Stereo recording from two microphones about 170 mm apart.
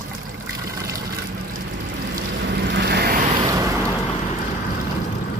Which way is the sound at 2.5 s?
80° right.